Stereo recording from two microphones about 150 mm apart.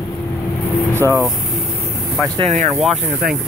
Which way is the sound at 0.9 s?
15° right (ahead or behind).